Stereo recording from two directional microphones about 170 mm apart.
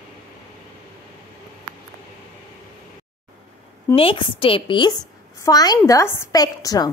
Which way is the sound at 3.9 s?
35° left (ahead or behind).